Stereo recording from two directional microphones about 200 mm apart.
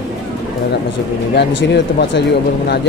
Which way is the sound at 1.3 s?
60° left (ahead or behind).